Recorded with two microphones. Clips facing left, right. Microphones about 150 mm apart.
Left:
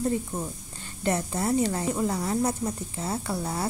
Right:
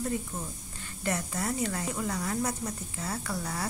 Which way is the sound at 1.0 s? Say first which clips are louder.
Left 5 dB; 30° left (ahead or behind).